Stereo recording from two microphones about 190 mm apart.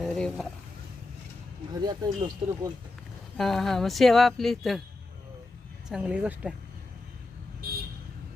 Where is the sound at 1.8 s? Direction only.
20° right (ahead or behind).